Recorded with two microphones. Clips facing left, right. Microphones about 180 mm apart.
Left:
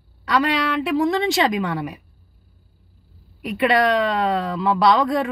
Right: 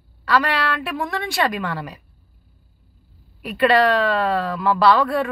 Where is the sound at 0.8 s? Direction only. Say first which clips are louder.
Left 7 dB; 20° left (ahead or behind).